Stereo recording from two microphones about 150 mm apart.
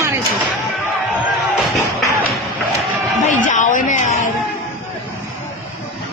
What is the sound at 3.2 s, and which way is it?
A man's voice, 55° left (ahead or behind).